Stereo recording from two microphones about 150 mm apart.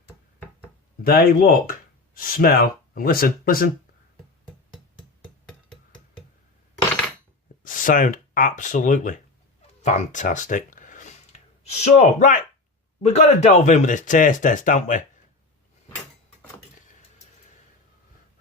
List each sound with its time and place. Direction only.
1.0 s speech: 85° left
7.6 s a sound: 65° left (ahead or behind)
13.1 s speech: 45° left (ahead or behind)